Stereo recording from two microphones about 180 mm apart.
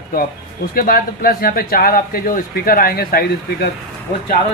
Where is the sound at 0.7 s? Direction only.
55° left (ahead or behind).